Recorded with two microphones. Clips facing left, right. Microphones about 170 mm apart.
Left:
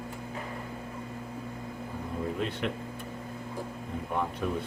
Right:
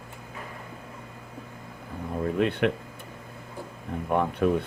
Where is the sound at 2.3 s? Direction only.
65° right (ahead or behind).